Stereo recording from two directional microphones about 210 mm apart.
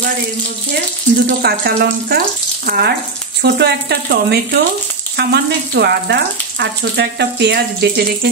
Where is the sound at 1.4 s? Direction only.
50° right (ahead or behind).